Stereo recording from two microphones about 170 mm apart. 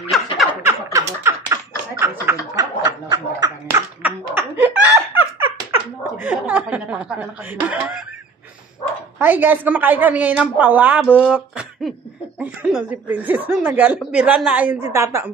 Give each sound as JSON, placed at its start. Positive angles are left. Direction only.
{"t": 0.1, "sound": "a sound", "side_deg": 0}
{"t": 0.7, "sound": "a sound", "side_deg": -15}
{"t": 2.5, "sound": "snicker", "side_deg": -20}
{"t": 4.0, "sound": "laughter", "side_deg": -10}
{"t": 6.1, "sound": "speech", "side_deg": -5}
{"t": 9.2, "sound": "a woman's voice", "side_deg": -10}